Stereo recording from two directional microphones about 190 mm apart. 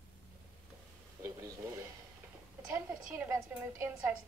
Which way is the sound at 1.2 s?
15° right (ahead or behind).